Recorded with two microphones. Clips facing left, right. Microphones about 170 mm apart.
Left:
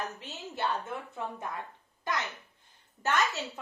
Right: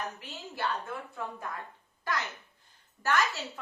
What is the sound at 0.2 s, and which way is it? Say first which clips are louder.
A woman's voice: left 1 dB; 20° left (ahead or behind).